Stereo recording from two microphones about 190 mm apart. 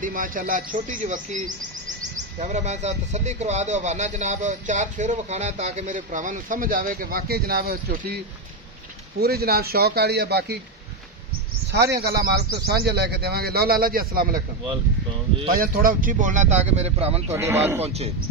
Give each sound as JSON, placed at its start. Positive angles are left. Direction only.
{"t": 0.0, "sound": "speech", "side_deg": -45}
{"t": 9.2, "sound": "speech", "side_deg": -55}
{"t": 11.9, "sound": "speech", "side_deg": -60}
{"t": 15.5, "sound": "speech", "side_deg": -50}
{"t": 17.3, "sound": "speech", "side_deg": -15}
{"t": 17.8, "sound": "speech", "side_deg": -35}